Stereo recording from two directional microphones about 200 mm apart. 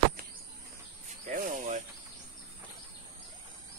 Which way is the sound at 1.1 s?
40° right (ahead or behind).